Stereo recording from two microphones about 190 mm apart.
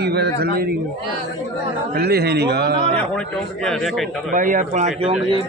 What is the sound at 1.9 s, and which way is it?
Speech, 55° right (ahead or behind).